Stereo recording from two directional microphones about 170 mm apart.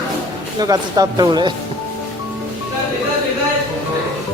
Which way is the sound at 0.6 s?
20° right (ahead or behind).